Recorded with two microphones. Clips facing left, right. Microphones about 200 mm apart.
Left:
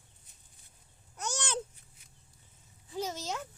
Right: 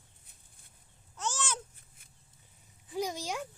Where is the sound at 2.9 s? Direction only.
15° right (ahead or behind).